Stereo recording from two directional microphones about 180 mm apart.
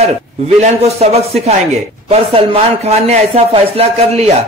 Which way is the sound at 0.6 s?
35° right (ahead or behind).